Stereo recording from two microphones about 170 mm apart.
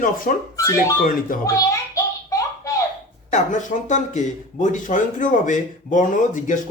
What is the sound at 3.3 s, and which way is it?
Speech, 50° left (ahead or behind).